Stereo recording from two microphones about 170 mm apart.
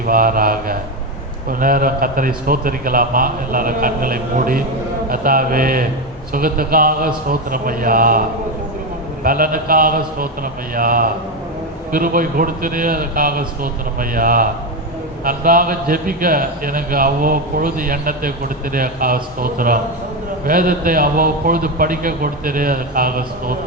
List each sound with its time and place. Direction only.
0.0 s a man's voice: 55° right (ahead or behind)
9.2 s a man's voice: 55° right (ahead or behind)